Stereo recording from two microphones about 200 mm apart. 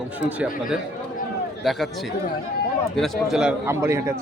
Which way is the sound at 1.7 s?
Centre (ahead or behind).